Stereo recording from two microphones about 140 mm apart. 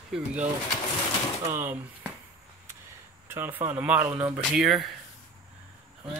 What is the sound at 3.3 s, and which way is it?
Speech, 15° right (ahead or behind).